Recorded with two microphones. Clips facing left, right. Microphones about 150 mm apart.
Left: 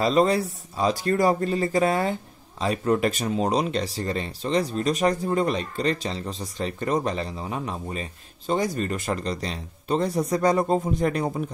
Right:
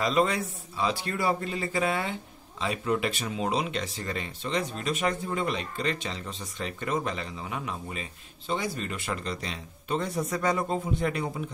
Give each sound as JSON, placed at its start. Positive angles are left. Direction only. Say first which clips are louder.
{"t": 0.0, "sound": "speech", "louder": "left 5 dB", "side_deg": 35}